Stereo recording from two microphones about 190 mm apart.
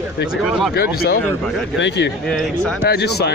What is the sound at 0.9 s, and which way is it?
Speech, 55° left (ahead or behind).